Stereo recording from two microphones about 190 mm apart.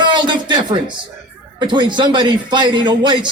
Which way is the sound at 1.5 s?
25° right (ahead or behind).